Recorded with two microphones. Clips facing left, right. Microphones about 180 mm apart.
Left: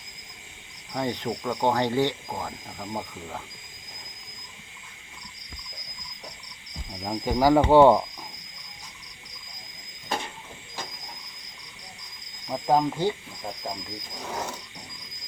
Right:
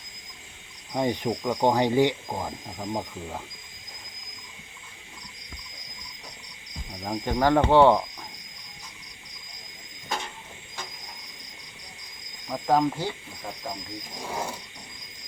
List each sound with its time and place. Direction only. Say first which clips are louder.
0.9 s speech: right 3 dB; 15° right (ahead or behind)
7.0 s speech: left 2 dB; 5° left (ahead or behind)
12.5 s speech: even; 15° left (ahead or behind)